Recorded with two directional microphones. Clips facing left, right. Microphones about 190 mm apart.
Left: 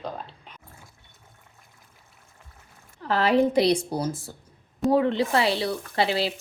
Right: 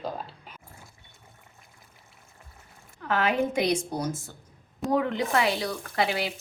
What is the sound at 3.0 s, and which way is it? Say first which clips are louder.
A woman's voice: left 5 dB; 35° left (ahead or behind).